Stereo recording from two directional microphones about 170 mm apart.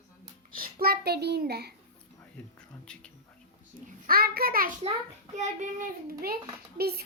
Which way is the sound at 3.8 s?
60° right (ahead or behind).